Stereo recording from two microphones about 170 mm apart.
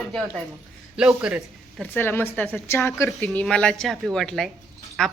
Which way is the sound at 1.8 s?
15° left (ahead or behind).